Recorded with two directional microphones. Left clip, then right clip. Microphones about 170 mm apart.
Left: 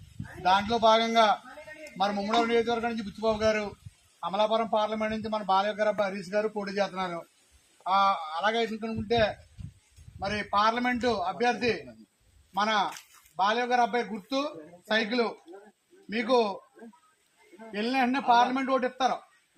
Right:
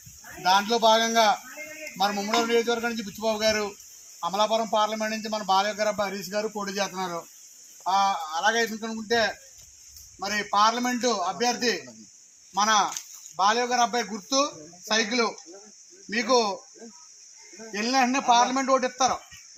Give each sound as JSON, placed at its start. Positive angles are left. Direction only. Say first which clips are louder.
{"t": 0.4, "sound": "a man's voice", "louder": "right 2 dB", "side_deg": 15}
{"t": 17.7, "sound": "a man's voice", "louder": "right 4 dB", "side_deg": 30}